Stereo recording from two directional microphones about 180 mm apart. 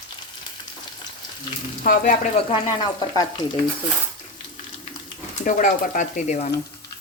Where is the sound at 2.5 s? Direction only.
25° left (ahead or behind).